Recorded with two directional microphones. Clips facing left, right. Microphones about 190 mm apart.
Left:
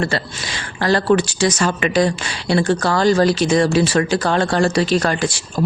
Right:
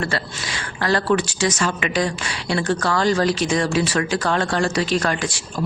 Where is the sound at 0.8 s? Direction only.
30° left (ahead or behind).